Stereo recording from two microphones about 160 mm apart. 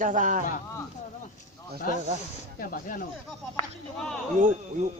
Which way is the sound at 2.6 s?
60° left (ahead or behind).